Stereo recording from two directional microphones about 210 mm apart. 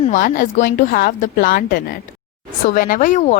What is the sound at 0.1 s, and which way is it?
A woman's voice, 40° left (ahead or behind).